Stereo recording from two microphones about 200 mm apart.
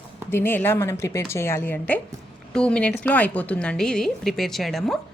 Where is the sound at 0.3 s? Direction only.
10° left (ahead or behind).